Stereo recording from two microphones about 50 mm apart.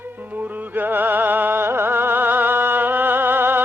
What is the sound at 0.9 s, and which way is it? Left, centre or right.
Music, right.